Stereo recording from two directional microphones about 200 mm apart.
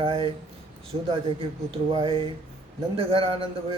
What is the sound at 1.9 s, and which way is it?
A man's voice, 25° right (ahead or behind).